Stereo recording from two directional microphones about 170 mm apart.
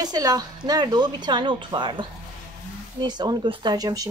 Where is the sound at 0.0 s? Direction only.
25° right (ahead or behind).